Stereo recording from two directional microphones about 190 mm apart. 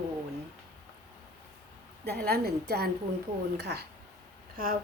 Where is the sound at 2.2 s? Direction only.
50° right (ahead or behind).